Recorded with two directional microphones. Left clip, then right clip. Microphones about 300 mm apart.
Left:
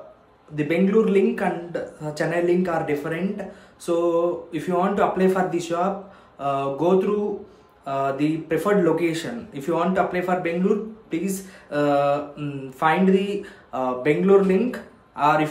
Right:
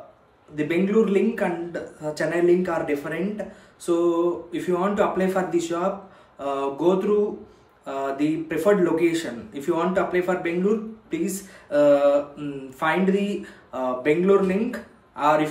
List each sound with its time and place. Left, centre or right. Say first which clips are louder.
0.6 s a man's voice: left 1 dB; centre